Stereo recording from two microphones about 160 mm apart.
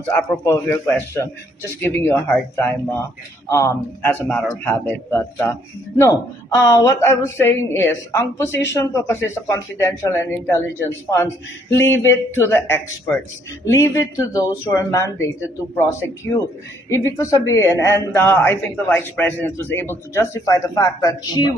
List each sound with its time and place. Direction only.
0.2 s speech: 15° left (ahead or behind)
6.7 s speech: 20° left (ahead or behind)